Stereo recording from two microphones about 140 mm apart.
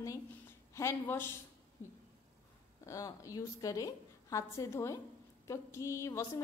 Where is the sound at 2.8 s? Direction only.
25° left (ahead or behind).